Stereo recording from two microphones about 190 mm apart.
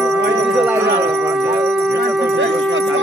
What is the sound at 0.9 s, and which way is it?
Music, 5° right (ahead or behind).